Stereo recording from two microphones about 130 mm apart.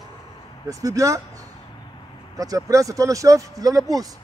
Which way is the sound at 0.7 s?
25° right (ahead or behind).